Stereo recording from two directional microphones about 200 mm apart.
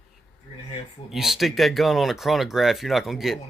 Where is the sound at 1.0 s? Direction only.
Centre (ahead or behind).